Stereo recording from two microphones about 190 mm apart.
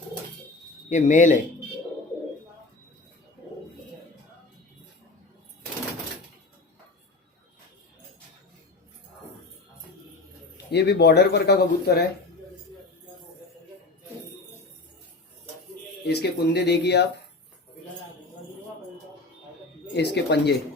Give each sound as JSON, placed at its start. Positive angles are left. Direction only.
{"t": 0.9, "sound": "speech", "side_deg": 40}
{"t": 10.7, "sound": "speech", "side_deg": 60}
{"t": 16.0, "sound": "speech", "side_deg": 55}
{"t": 19.9, "sound": "speech", "side_deg": 60}